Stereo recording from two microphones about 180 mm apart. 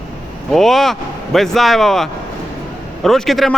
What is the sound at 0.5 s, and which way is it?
A man's voice, centre (ahead or behind).